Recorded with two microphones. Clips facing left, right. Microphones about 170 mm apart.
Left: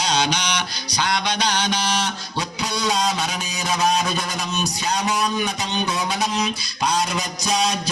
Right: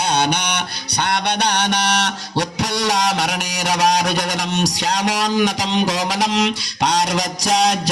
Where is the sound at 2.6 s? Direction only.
80° right.